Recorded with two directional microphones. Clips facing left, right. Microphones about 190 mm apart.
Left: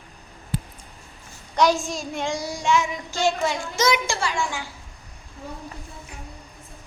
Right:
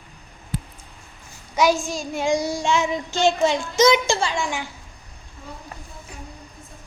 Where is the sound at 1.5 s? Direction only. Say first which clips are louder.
Right 1 dB; 5° right (ahead or behind).